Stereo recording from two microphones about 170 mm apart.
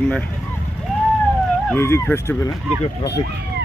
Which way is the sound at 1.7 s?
15° left (ahead or behind).